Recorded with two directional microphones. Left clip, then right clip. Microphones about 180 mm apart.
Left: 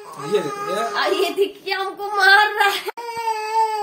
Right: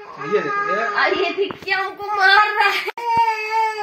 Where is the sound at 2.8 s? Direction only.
20° left (ahead or behind).